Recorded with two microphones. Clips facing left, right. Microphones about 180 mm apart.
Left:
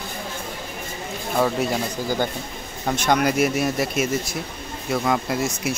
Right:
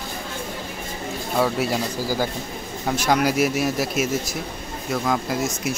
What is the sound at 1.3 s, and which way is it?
Speech, 5° right (ahead or behind).